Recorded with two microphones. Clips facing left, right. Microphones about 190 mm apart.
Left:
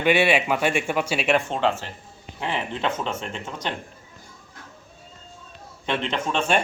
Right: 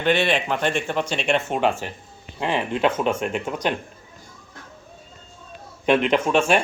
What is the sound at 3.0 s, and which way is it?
Speech, 15° right (ahead or behind).